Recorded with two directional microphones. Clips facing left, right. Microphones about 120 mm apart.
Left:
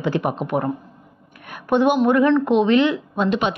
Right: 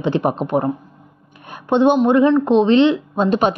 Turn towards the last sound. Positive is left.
turn(degrees=-40)  # may be behind; listen again after turning